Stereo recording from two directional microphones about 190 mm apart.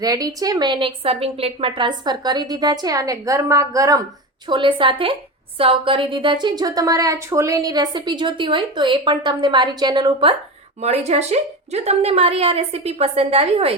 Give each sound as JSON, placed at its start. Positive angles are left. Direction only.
{"t": 0.0, "sound": "a woman's voice", "side_deg": -20}